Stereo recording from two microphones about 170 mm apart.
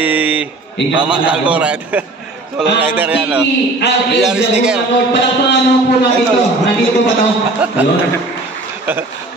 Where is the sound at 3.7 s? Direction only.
90° left.